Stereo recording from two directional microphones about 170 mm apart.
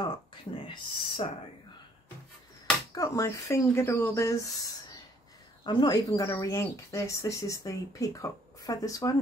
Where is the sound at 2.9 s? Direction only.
20° left (ahead or behind).